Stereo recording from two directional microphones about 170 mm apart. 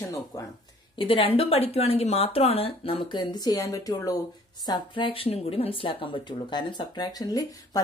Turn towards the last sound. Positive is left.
turn(degrees=20)  # may be behind; listen again after turning